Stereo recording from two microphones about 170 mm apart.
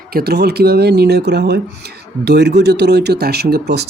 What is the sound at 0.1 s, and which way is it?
Speech, 65° right (ahead or behind).